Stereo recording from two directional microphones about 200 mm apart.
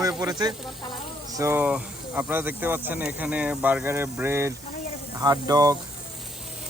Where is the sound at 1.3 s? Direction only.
15° right (ahead or behind).